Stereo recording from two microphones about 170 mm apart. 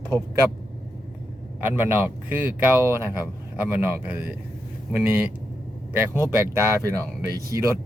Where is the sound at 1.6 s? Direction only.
10° right (ahead or behind).